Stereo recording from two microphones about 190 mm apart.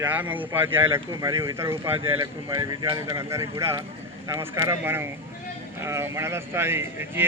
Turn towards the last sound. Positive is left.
turn(degrees=-10)  # may be behind; listen again after turning